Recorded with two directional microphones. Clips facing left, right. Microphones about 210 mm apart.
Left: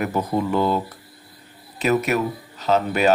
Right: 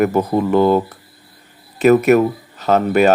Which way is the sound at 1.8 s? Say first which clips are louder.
Right 9 dB; 50° right (ahead or behind).